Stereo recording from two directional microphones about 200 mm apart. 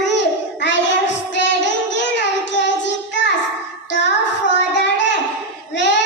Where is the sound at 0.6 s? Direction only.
65° left (ahead or behind).